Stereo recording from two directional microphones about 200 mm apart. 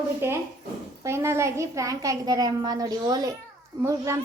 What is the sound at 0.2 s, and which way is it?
A child's voice, 10° right (ahead or behind).